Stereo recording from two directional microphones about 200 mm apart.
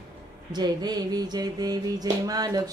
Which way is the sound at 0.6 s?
20° right (ahead or behind).